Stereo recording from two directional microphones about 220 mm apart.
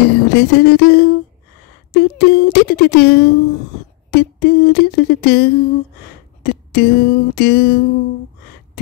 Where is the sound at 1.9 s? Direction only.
45° left (ahead or behind).